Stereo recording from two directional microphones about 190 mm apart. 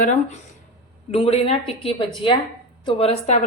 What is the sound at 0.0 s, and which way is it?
Speech, 40° left (ahead or behind).